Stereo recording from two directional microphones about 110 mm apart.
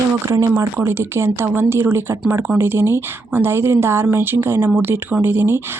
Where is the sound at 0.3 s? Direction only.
30° right (ahead or behind).